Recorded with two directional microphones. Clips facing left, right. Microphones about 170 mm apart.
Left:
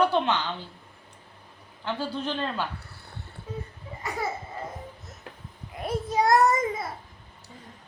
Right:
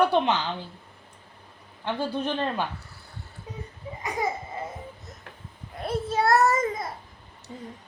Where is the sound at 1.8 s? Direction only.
15° right (ahead or behind).